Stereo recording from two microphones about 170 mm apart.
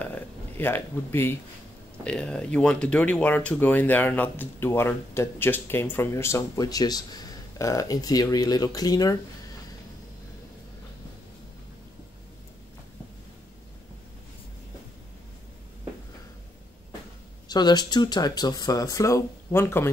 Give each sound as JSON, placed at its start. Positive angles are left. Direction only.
{"t": 0.0, "sound": "speech", "side_deg": 10}
{"t": 17.5, "sound": "speech", "side_deg": 25}